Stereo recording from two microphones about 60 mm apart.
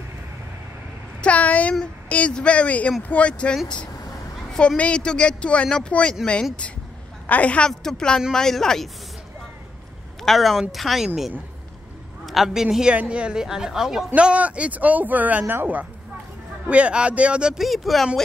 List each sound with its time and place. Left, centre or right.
1.2 s speech: left
6.2 s speech: centre
7.2 s speech: left; by 8.8 s centre
10.2 s speech: centre
12.3 s speech: centre
14.1 s speech: right
17.6 s speech: centre